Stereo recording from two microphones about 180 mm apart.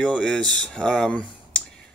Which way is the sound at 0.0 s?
5° left (ahead or behind).